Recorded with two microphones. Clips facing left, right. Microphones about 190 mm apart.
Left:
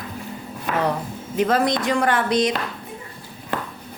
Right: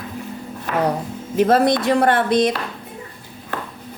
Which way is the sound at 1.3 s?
50° right (ahead or behind).